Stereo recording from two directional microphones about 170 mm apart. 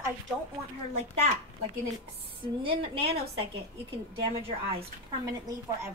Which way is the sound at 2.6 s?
30° right (ahead or behind).